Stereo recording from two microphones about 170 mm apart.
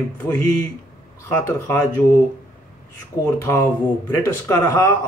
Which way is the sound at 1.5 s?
15° left (ahead or behind).